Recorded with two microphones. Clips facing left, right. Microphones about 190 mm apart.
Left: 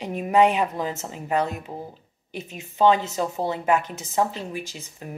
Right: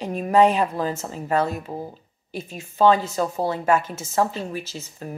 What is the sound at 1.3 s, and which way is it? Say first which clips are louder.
A woman's voice: right 2 dB; 15° left (ahead or behind).